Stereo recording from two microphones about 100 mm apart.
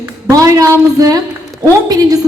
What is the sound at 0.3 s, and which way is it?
A man's voice, 35° right (ahead or behind).